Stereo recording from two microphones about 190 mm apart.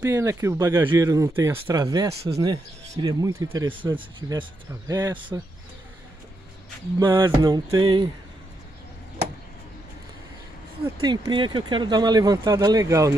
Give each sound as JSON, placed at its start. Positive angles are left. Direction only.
{"t": 0.0, "sound": "speech", "side_deg": -15}
{"t": 3.7, "sound": "speech", "side_deg": -25}
{"t": 7.0, "sound": "speech", "side_deg": -15}
{"t": 11.0, "sound": "speech", "side_deg": -20}